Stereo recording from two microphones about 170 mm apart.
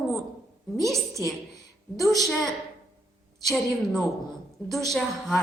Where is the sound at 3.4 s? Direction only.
Centre (ahead or behind).